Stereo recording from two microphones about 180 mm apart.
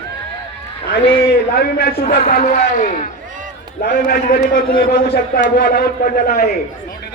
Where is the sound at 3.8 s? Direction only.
60° left (ahead or behind).